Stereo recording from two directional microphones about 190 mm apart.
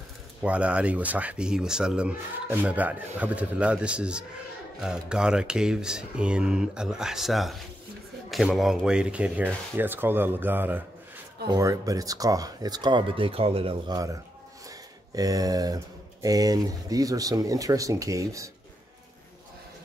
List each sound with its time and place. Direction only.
0.4 s speech: 5° right (ahead or behind)
15.1 s speech: 20° right (ahead or behind)